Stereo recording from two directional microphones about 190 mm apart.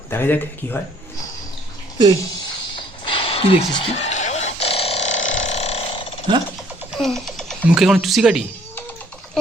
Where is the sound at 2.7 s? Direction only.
25° left (ahead or behind).